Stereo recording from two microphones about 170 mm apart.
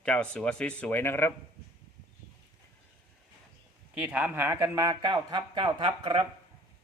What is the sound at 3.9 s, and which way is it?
Speech, 5° right (ahead or behind).